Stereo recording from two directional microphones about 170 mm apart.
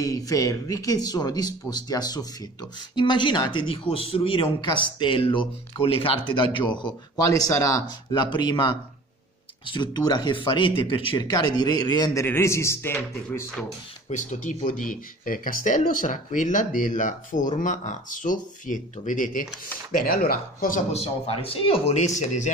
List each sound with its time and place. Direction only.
0.0 s a man's voice: 20° left (ahead or behind)
14.0 s speech: 45° left (ahead or behind)
20.9 s a man's voice: 35° left (ahead or behind)